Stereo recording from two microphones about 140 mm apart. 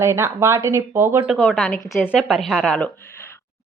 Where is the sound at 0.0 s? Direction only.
20° right (ahead or behind).